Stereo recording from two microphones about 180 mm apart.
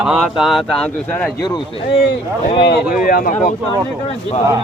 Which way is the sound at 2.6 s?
65° left (ahead or behind).